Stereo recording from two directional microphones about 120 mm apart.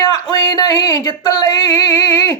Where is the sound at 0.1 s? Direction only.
30° left (ahead or behind).